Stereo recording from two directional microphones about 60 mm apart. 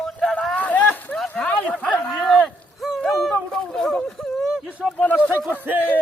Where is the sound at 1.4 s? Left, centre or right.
Centre.